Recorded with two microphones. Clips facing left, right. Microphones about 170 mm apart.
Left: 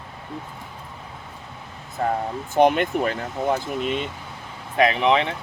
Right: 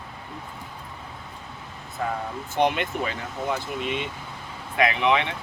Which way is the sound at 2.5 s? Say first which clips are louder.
Left 6 dB; 50° left (ahead or behind).